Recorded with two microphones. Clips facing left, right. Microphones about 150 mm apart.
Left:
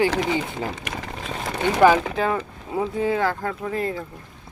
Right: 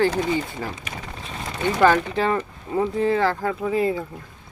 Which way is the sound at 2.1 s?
Centre (ahead or behind).